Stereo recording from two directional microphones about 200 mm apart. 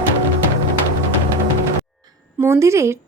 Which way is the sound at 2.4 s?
15° right (ahead or behind).